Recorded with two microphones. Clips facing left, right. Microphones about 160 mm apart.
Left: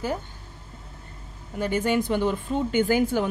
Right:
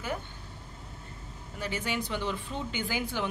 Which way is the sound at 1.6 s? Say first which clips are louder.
Left 10 dB; 50° left (ahead or behind).